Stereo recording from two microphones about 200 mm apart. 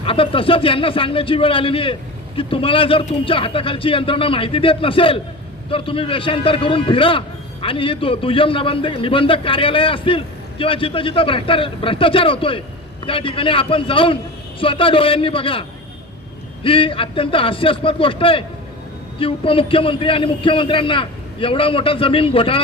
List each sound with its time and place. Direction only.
0.0 s a man's voice: 25° left (ahead or behind)
16.6 s a man's voice: 25° left (ahead or behind)